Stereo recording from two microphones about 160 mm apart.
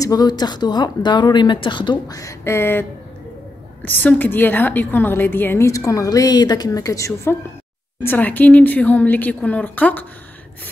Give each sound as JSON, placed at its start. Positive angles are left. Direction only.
{"t": 0.0, "sound": "a woman's voice", "side_deg": 25}